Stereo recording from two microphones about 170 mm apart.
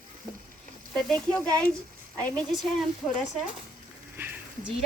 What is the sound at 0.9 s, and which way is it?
A woman's voice, 5° left (ahead or behind).